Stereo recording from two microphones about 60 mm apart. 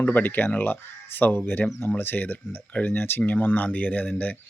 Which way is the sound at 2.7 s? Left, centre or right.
Left.